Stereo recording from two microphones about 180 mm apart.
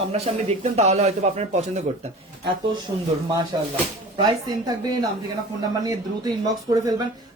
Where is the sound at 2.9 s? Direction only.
25° right (ahead or behind).